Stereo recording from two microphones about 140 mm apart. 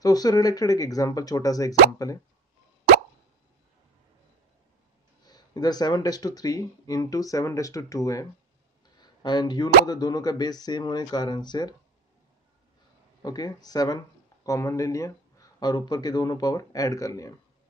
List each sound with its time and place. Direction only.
0.0 s speech: 25° left (ahead or behind)
5.2 s speech: 30° left (ahead or behind)
13.2 s speech: 30° left (ahead or behind)